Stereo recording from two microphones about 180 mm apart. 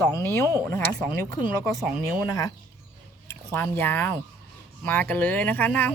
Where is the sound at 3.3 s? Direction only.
10° left (ahead or behind).